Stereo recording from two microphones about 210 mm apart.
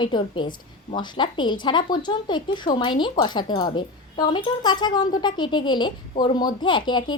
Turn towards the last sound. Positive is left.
turn(degrees=20)  # may be behind; listen again after turning